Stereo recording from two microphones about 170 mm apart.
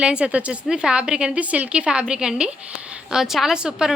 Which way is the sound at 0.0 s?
5° right (ahead or behind).